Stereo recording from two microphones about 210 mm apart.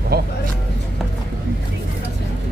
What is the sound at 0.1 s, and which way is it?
Vehicle, 50° right (ahead or behind).